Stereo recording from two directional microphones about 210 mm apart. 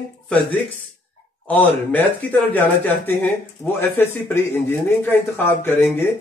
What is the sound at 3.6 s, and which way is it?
Speech, 10° left (ahead or behind).